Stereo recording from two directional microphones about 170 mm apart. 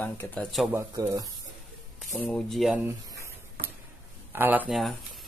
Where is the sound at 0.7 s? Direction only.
20° right (ahead or behind).